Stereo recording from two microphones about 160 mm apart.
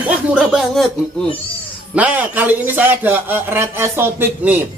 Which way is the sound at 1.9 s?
10° right (ahead or behind).